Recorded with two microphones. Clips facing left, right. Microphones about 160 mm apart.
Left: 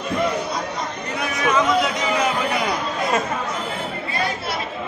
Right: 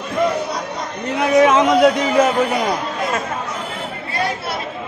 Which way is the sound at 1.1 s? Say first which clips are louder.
Right 9 dB; 75° right (ahead or behind).